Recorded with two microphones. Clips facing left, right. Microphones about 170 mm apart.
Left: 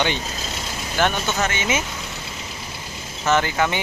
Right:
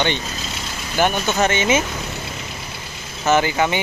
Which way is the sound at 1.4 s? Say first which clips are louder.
Right 9 dB; 25° right (ahead or behind).